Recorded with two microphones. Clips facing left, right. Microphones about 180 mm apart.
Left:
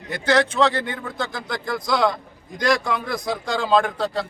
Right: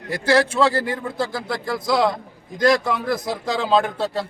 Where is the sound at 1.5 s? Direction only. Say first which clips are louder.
Right 1 dB; 25° right (ahead or behind).